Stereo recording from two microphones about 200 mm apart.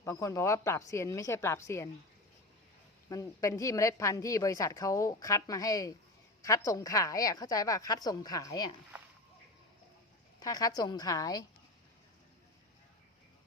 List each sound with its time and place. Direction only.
0.0 s a woman's voice: 15° left (ahead or behind)
3.1 s a woman's voice: 15° left (ahead or behind)
10.4 s a woman's voice: 20° left (ahead or behind)